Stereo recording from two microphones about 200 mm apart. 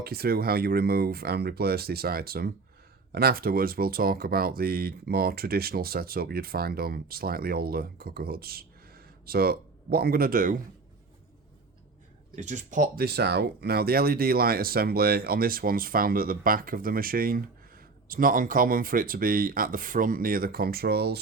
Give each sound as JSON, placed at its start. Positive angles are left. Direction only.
{"t": 0.0, "sound": "speech", "side_deg": -50}
{"t": 12.4, "sound": "speech", "side_deg": -40}